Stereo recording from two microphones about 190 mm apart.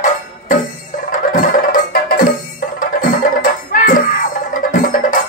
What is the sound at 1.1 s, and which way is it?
Music, 45° left (ahead or behind).